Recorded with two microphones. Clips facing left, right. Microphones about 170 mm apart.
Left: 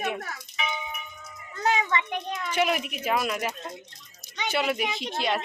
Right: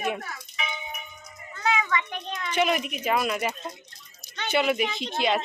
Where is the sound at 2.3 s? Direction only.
5° left (ahead or behind).